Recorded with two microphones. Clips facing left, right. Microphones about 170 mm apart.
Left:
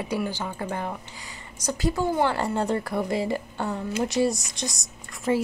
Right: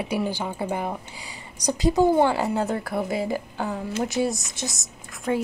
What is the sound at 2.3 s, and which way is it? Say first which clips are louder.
Speech: right 1 dB; 5° right (ahead or behind).